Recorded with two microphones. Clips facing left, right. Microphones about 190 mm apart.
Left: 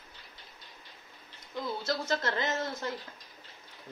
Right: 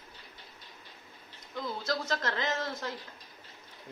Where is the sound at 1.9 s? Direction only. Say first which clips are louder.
Left 1 dB; 5° left (ahead or behind).